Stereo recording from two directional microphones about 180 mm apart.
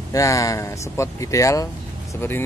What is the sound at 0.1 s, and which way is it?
Speech, 15° left (ahead or behind).